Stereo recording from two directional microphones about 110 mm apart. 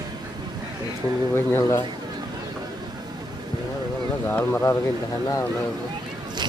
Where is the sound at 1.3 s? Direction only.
25° left (ahead or behind).